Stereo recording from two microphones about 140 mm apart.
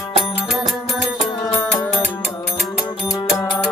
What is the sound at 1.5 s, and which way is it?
Music, 10° left (ahead or behind).